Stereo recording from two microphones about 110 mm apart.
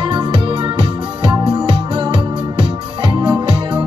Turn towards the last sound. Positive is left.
turn(degrees=-45)  # may be behind; listen again after turning